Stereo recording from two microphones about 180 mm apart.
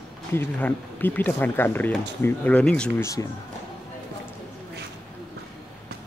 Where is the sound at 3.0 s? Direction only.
20° left (ahead or behind).